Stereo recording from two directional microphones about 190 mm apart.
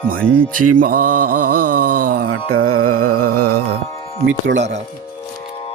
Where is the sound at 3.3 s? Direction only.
55° right (ahead or behind).